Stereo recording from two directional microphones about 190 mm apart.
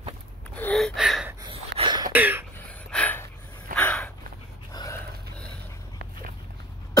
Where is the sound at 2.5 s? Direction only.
10° left (ahead or behind).